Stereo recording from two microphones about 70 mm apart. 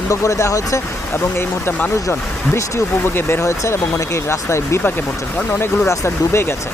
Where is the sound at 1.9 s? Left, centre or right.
Left.